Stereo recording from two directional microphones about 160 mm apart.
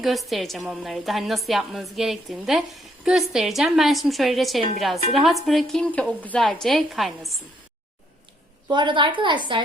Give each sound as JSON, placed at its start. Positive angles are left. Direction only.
{"t": 0.0, "sound": "a woman's voice", "side_deg": 0}
{"t": 8.7, "sound": "a woman's voice", "side_deg": -30}